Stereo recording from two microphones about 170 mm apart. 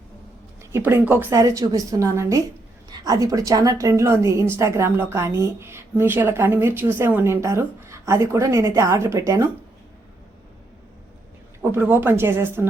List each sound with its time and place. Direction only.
0.6 s a woman's voice: 15° right (ahead or behind)
11.6 s a woman's voice: 15° right (ahead or behind)